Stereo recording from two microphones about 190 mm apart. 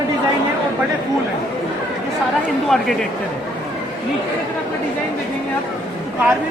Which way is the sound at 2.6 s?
Centre (ahead or behind).